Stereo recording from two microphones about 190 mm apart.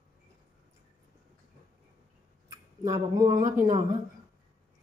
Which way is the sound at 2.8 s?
20° right (ahead or behind).